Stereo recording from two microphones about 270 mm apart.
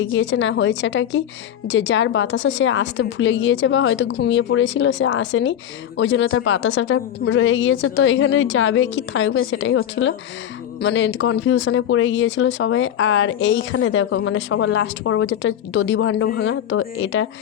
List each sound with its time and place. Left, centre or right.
0.0 s speech: left